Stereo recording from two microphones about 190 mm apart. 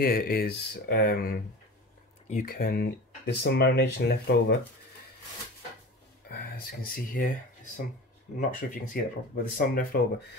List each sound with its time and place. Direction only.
0.0 s speech: 50° left (ahead or behind)
6.3 s speech: 50° left (ahead or behind)